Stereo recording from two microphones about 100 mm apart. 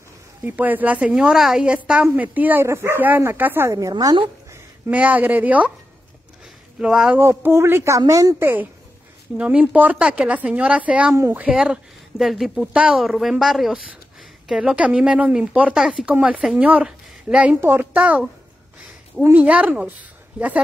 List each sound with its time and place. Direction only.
0.5 s speech: 20° right (ahead or behind)
3.7 s a woman's voice: 40° right (ahead or behind)
4.9 s speech: 15° right (ahead or behind)
6.8 s speech: 10° right (ahead or behind)
7.2 s a woman's voice: 25° right (ahead or behind)
9.4 s a woman's voice: 15° right (ahead or behind)
17.6 s speech: 20° right (ahead or behind)
19.3 s speech: 15° right (ahead or behind)